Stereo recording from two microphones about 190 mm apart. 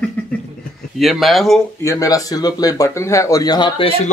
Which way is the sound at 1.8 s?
15° left (ahead or behind).